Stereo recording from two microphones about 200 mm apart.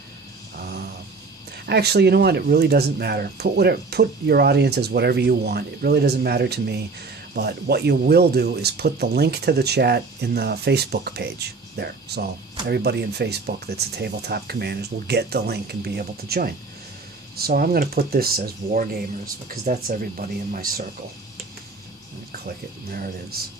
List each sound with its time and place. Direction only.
0.5 s a sound: 50° right (ahead or behind)
1.6 s speech: 55° right (ahead or behind)
22.3 s speech: 50° right (ahead or behind)